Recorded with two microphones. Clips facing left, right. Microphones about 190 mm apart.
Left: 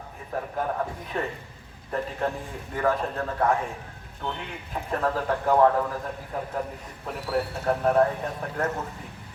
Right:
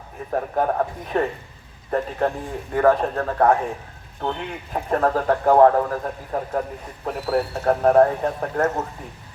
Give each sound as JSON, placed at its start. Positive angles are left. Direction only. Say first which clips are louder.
{"t": 0.3, "sound": "a man's voice", "louder": "right 7 dB", "side_deg": -50}